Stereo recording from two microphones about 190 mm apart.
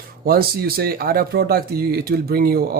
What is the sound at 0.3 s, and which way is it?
Speech, 55° right (ahead or behind).